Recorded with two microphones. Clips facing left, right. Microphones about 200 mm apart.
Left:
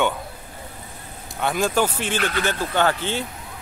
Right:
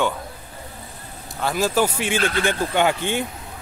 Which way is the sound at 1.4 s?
Centre (ahead or behind).